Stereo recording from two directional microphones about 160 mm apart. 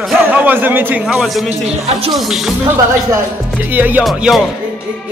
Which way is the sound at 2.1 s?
Centre (ahead or behind).